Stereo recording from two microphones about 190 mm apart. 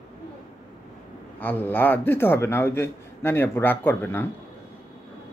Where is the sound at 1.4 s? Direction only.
10° left (ahead or behind).